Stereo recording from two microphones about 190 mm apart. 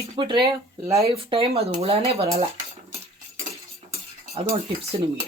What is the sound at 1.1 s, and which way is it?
Speech, 30° right (ahead or behind).